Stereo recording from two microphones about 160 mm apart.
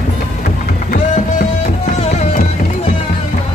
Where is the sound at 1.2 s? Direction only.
50° left (ahead or behind).